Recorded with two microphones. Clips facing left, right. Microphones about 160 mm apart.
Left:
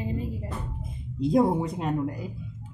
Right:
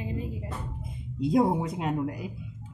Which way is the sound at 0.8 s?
Centre (ahead or behind).